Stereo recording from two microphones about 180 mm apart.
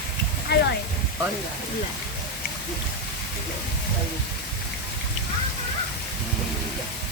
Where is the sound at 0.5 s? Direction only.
65° left (ahead or behind).